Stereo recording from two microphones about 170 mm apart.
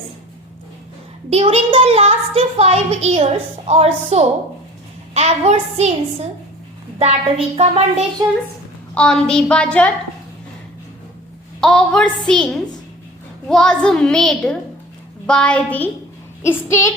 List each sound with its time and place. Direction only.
1.3 s a woman's voice: 35° right (ahead or behind)
7.0 s a woman's voice: 35° right (ahead or behind)
9.0 s a woman's voice: 5° left (ahead or behind)
11.6 s a child's voice: 5° left (ahead or behind)
13.5 s a child's voice: 5° left (ahead or behind)